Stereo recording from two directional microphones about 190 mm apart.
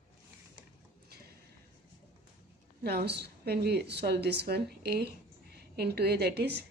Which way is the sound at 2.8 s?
55° right (ahead or behind).